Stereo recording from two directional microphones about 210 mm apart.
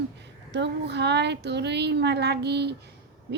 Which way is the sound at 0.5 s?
55° right (ahead or behind).